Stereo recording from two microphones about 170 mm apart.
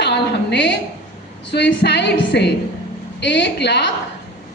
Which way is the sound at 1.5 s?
90° left.